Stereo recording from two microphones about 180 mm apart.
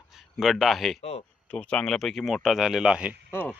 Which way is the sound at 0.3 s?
Centre (ahead or behind).